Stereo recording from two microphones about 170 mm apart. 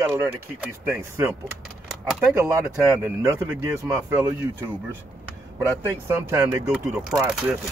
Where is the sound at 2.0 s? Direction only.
5° right (ahead or behind).